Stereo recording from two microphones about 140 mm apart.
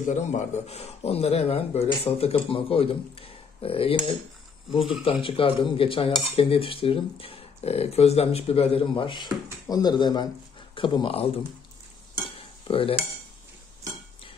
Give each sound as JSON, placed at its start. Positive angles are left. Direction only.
{"t": 0.0, "sound": "a man's voice", "side_deg": 60}
{"t": 12.4, "sound": "cutlery", "side_deg": 40}